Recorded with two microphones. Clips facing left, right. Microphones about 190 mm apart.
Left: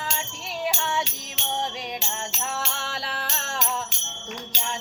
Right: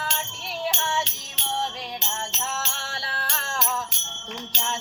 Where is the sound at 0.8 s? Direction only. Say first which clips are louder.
Even; 20° left (ahead or behind).